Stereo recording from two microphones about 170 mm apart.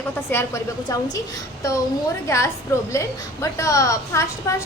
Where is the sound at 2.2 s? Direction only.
15° left (ahead or behind).